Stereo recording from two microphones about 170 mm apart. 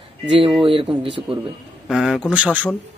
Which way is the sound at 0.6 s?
30° right (ahead or behind).